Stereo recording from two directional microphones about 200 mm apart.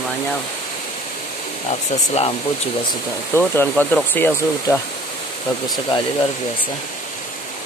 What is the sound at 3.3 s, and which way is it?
Speech, 10° left (ahead or behind).